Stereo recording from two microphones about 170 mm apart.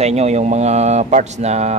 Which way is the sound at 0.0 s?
40° right (ahead or behind).